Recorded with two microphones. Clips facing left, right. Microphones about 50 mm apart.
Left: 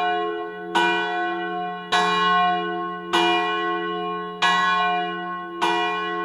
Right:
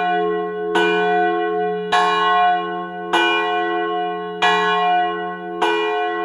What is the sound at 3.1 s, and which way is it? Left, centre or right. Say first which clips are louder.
Church bell: right 3 dB; right.